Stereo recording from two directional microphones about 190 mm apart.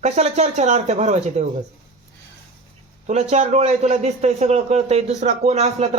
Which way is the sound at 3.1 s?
35° right (ahead or behind).